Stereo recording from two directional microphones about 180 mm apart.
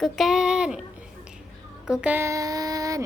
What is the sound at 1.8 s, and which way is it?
Child singing, 5° right (ahead or behind).